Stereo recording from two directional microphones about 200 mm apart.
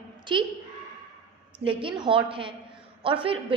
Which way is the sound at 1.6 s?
25° right (ahead or behind).